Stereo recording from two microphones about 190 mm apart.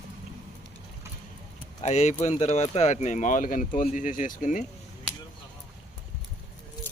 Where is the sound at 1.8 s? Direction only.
35° left (ahead or behind).